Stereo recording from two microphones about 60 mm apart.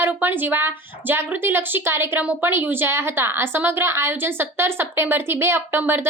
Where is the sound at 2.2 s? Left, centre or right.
Right.